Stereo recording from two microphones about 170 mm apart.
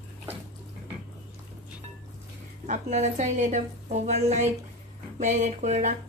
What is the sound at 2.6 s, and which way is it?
Speech, 45° right (ahead or behind).